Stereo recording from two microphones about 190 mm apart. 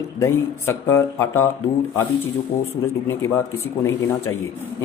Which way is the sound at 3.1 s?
15° left (ahead or behind).